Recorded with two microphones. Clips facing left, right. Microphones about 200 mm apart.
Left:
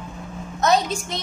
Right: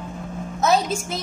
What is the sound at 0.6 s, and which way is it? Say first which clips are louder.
Speech: even; 5° right (ahead or behind).